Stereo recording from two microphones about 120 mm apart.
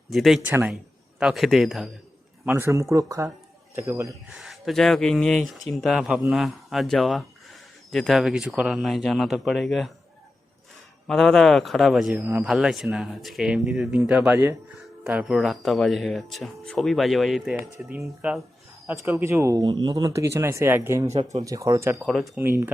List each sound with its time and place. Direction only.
0.1 s speech: centre (ahead or behind)
0.4 s a man's voice: 15° right (ahead or behind)
1.2 s speech: centre (ahead or behind)
2.5 s speech: 20° right (ahead or behind)
4.3 s speech: centre (ahead or behind)
11.0 s speech: 5° left (ahead or behind)
12.2 s a man's voice: 15° right (ahead or behind)
12.5 s a man's voice: 5° right (ahead or behind)
15.1 s speech: 5° right (ahead or behind)
18.9 s speech: 20° right (ahead or behind)
22.0 s speech: centre (ahead or behind)
22.4 s speech: 20° right (ahead or behind)